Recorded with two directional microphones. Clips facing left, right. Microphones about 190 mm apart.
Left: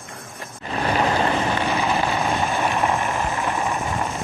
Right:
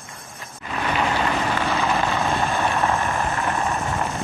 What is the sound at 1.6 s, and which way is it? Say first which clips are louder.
Vehicle: even; 15° left (ahead or behind).